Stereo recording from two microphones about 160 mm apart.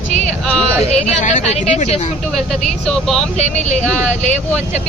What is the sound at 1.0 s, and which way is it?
A woman's voice, 50° left (ahead or behind).